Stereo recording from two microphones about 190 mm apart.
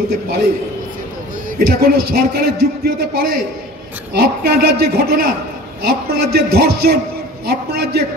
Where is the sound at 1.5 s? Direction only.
55° right (ahead or behind).